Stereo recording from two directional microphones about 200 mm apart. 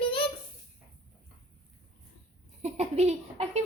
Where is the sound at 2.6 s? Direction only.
30° right (ahead or behind).